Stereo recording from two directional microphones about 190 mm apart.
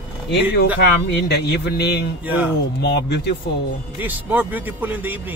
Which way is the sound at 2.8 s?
65° left (ahead or behind).